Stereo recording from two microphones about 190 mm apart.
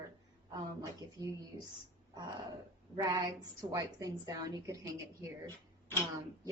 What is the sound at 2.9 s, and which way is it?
A woman's voice, 20° right (ahead or behind).